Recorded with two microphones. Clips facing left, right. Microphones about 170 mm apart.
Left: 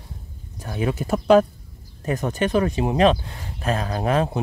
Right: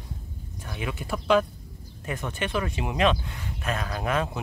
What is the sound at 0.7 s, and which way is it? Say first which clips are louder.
Speech: left 8 dB; 40° left (ahead or behind).